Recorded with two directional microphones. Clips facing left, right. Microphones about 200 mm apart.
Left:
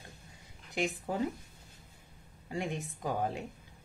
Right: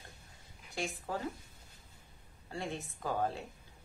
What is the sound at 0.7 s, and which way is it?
Speech, 20° left (ahead or behind).